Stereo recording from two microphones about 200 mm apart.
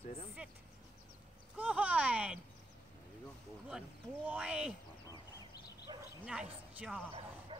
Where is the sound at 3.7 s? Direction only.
5° right (ahead or behind).